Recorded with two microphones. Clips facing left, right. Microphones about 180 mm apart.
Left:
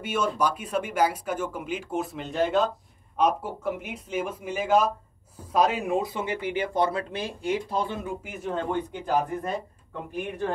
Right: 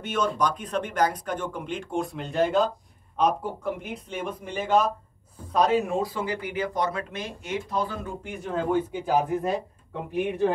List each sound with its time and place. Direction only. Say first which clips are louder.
0.0 s a man's voice: even; 10° left (ahead or behind); by 8.0 s 30° left (ahead or behind)
8.0 s a man's voice: left 1 dB; 5° left (ahead or behind)